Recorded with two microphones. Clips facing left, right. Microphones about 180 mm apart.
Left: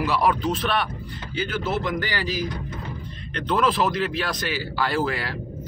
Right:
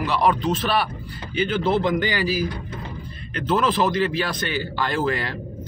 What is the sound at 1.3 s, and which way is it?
Speech, 25° right (ahead or behind).